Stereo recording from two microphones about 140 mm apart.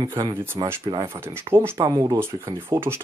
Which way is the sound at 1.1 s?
15° right (ahead or behind).